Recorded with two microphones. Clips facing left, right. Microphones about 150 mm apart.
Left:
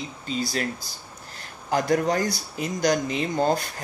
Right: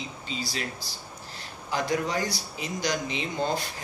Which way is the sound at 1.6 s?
50° left (ahead or behind).